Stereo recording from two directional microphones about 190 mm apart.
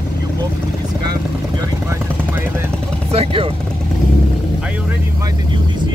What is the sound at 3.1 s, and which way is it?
Speech, 30° right (ahead or behind).